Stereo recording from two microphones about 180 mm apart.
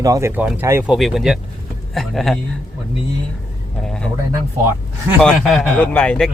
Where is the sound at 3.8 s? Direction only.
5° left (ahead or behind).